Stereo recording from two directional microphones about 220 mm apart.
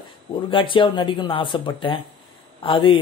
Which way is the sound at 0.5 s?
20° left (ahead or behind).